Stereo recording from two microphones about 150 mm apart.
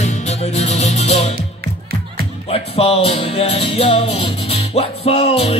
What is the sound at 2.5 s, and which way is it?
Music, 40° left (ahead or behind).